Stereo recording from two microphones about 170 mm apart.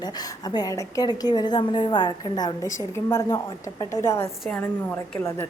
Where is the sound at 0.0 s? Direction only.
25° left (ahead or behind).